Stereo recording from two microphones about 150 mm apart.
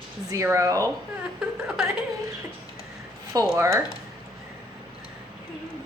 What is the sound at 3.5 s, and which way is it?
Speech, 20° right (ahead or behind).